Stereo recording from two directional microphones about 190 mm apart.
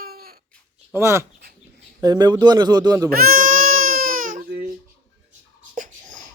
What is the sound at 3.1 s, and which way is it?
Baby cry, 50° right (ahead or behind).